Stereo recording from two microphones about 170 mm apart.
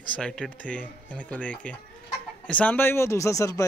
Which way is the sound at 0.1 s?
5° left (ahead or behind).